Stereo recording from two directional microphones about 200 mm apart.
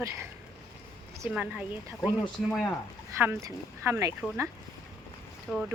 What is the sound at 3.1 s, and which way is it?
Speech, 10° right (ahead or behind).